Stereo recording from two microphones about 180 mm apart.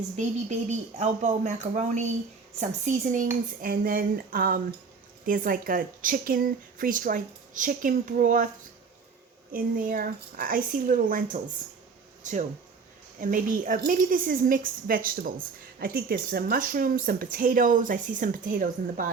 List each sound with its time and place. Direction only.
0.9 s speech: 40° right (ahead or behind)
3.6 s speech: 55° right (ahead or behind)
9.5 s speech: 50° right (ahead or behind)